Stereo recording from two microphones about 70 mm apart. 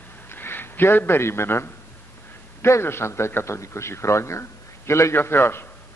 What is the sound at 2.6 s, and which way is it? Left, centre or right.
A man's voice, left.